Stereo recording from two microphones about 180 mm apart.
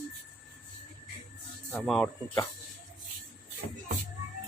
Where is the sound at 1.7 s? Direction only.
Centre (ahead or behind).